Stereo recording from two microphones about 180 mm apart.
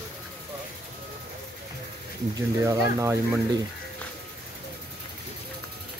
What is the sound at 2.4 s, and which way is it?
Speech, 15° right (ahead or behind).